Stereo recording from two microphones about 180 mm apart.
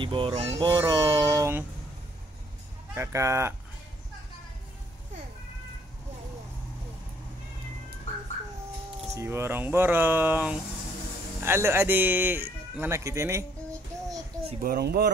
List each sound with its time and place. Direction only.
0.0 s speech: 30° right (ahead or behind)
2.9 s speech: 15° right (ahead or behind)
9.1 s speech: 15° right (ahead or behind)
14.6 s speech: 60° right (ahead or behind)